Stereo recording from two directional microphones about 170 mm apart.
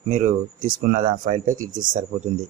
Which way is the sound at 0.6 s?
55° right (ahead or behind).